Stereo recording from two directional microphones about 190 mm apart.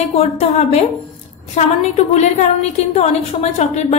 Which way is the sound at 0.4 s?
35° left (ahead or behind).